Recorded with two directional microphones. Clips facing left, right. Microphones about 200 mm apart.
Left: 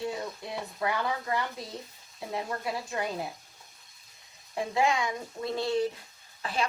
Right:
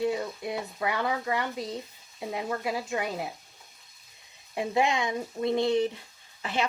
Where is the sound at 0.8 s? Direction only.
25° right (ahead or behind).